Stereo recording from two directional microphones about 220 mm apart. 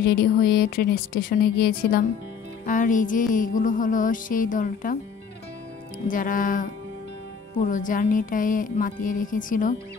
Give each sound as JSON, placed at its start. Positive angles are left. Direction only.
{"t": 0.0, "sound": "speech", "side_deg": 45}
{"t": 2.6, "sound": "music", "side_deg": 35}
{"t": 6.0, "sound": "music", "side_deg": 40}